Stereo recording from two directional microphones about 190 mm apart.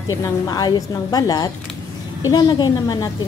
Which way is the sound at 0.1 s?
20° left (ahead or behind).